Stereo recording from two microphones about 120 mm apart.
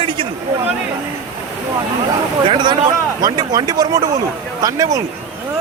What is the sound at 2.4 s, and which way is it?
Speech, 40° right (ahead or behind).